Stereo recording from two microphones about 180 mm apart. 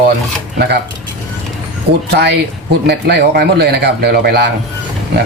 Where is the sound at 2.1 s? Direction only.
70° right (ahead or behind).